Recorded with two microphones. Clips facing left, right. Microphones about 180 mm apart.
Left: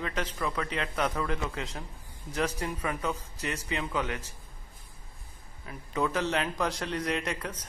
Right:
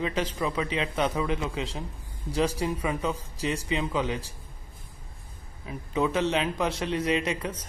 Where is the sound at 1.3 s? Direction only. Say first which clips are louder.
Right 4 dB; 15° right (ahead or behind).